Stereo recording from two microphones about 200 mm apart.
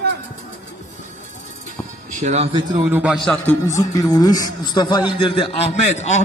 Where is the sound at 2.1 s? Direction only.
35° right (ahead or behind).